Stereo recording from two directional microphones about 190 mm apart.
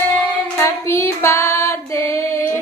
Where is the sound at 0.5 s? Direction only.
15° left (ahead or behind).